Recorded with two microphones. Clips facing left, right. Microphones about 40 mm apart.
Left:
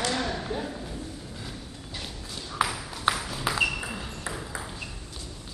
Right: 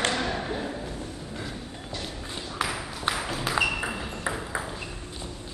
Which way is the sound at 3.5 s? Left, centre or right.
Centre.